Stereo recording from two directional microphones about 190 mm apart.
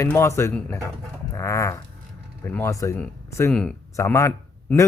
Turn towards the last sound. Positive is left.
turn(degrees=15)  # may be behind; listen again after turning